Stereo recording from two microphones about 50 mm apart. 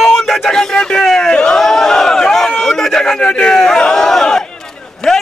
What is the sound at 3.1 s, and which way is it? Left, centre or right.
Crowd, centre.